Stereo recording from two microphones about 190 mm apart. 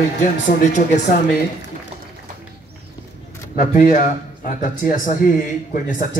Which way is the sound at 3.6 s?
45° left (ahead or behind).